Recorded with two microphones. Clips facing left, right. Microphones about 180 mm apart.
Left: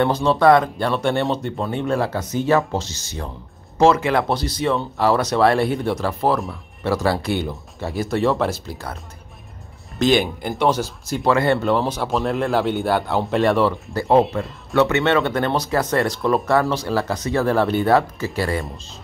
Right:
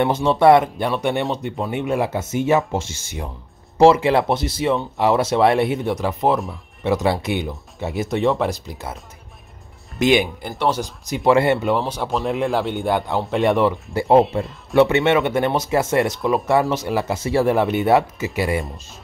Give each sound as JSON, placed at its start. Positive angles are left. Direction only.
{"t": 0.0, "sound": "speech", "side_deg": -20}
{"t": 2.0, "sound": "speech", "side_deg": -25}
{"t": 9.9, "sound": "speech", "side_deg": -10}
{"t": 10.4, "sound": "speech", "side_deg": 0}
{"t": 11.2, "sound": "speech", "side_deg": -20}
{"t": 11.5, "sound": "a man's voice", "side_deg": -5}
{"t": 13.4, "sound": "speech", "side_deg": -20}
{"t": 16.2, "sound": "speech", "side_deg": 0}
{"t": 16.4, "sound": "speech", "side_deg": -20}